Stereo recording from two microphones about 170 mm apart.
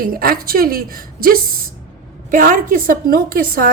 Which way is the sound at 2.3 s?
50° right (ahead or behind).